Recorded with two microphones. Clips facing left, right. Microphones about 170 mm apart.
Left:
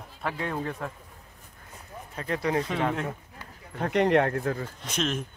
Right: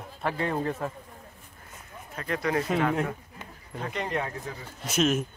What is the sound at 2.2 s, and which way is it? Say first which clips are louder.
Speech: left 1 dB; 30° left (ahead or behind).